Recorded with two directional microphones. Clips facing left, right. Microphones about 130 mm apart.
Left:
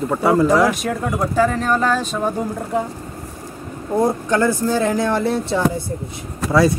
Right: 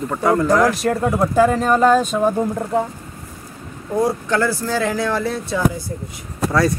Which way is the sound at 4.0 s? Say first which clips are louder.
Left 1 dB; 20° left (ahead or behind).